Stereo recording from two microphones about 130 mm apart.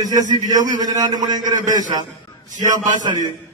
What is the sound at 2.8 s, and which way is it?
Speech, 75° right (ahead or behind).